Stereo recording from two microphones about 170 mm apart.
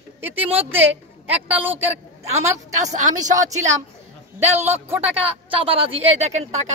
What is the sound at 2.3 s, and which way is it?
Speech, 45° right (ahead or behind).